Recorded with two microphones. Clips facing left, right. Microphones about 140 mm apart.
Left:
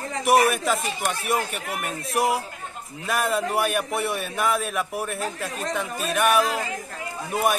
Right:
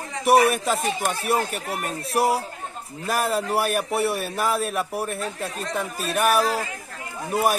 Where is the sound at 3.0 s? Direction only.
35° right (ahead or behind).